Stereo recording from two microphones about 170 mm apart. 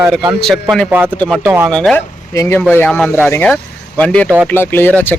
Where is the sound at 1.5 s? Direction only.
15° right (ahead or behind).